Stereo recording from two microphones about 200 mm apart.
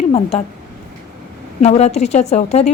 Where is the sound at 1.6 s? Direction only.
30° left (ahead or behind).